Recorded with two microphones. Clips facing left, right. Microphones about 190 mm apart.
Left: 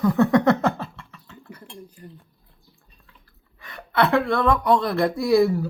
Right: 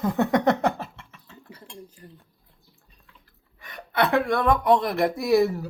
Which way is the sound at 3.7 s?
20° right (ahead or behind).